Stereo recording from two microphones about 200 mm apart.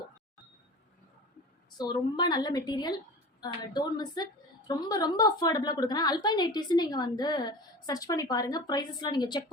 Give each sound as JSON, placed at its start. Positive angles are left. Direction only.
{"t": 1.9, "sound": "a woman's voice", "side_deg": 20}